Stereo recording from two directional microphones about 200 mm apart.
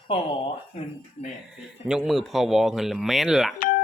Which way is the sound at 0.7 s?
35° left (ahead or behind).